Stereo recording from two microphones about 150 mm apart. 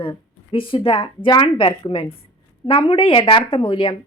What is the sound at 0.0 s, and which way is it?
A woman's voice, 35° left (ahead or behind).